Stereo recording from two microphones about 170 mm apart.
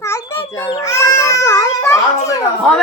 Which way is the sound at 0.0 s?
15° left (ahead or behind).